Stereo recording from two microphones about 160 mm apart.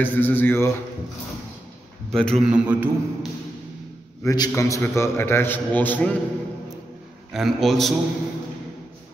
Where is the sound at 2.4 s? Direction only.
10° right (ahead or behind).